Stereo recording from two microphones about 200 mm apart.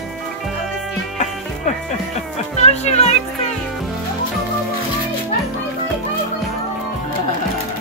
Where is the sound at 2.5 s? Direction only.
35° left (ahead or behind).